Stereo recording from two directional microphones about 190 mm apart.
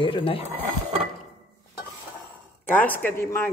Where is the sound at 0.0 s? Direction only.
30° left (ahead or behind).